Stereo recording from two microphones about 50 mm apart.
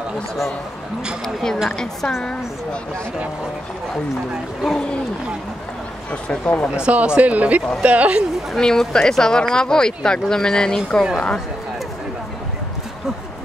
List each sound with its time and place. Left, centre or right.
1.2 s speech: centre
4.6 s speech: centre
6.4 s speech: left
6.7 s speech: right
8.5 s speech: centre